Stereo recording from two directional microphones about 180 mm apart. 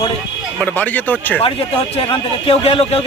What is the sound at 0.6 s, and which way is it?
Speech, 10° left (ahead or behind).